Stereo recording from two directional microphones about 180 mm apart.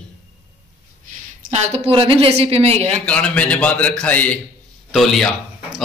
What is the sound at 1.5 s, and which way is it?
A woman's voice, 35° right (ahead or behind).